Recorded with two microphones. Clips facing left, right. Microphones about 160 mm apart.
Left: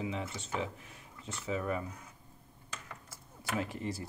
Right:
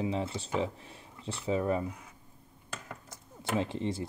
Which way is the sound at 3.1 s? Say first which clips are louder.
Right 5 dB; 25° right (ahead or behind).